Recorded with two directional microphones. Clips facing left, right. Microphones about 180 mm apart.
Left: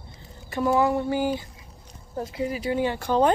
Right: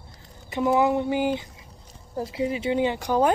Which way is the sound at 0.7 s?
15° right (ahead or behind).